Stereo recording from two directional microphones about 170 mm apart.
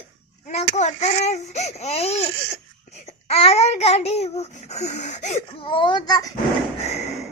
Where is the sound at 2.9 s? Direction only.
40° left (ahead or behind); by 6.3 s 20° left (ahead or behind).